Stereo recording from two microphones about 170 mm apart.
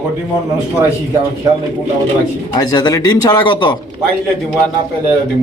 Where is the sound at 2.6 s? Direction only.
25° left (ahead or behind).